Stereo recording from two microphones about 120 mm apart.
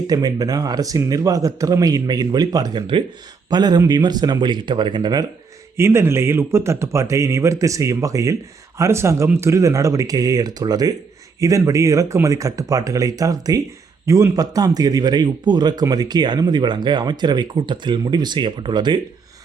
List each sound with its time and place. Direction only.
0.1 s speech: 30° right (ahead or behind)
5.7 s speech: 20° right (ahead or behind); by 18.9 s 40° right (ahead or behind)